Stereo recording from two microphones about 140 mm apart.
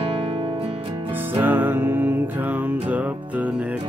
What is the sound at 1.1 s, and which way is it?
Music, 15° right (ahead or behind).